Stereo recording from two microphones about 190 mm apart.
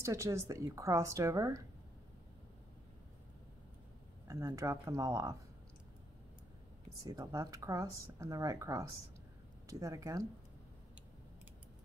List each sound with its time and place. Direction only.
0.0 s speech: 15° right (ahead or behind)
4.3 s speech: 15° right (ahead or behind)
7.1 s speech: 15° right (ahead or behind)